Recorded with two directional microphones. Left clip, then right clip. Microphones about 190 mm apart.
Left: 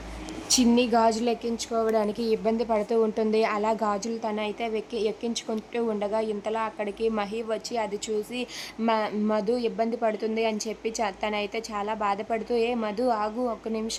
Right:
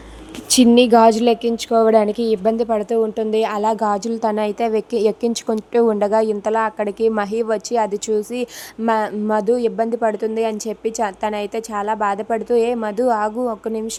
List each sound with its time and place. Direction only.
0.4 s a woman's voice: 40° right (ahead or behind)